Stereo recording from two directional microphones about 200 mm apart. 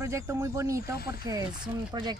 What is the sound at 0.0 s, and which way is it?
Speech, 15° right (ahead or behind).